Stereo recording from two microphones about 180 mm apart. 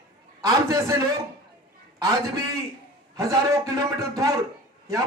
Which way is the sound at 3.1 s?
15° right (ahead or behind).